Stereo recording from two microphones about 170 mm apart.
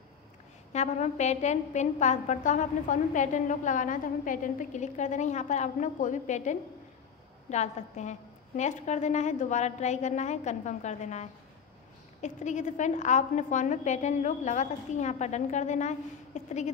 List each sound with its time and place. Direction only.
0.7 s a woman's voice: 45° left (ahead or behind)